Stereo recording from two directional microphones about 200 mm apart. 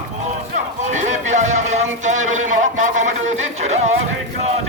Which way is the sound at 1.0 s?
35° right (ahead or behind).